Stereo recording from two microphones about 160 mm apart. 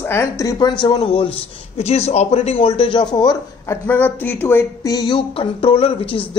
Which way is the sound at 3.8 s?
10° left (ahead or behind).